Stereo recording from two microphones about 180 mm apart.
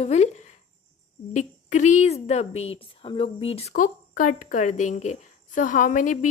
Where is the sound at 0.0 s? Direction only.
40° left (ahead or behind).